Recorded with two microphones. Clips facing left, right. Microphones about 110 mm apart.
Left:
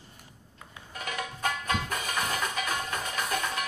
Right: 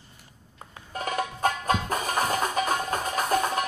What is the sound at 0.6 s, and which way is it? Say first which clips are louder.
Music: right 6 dB; 40° right (ahead or behind).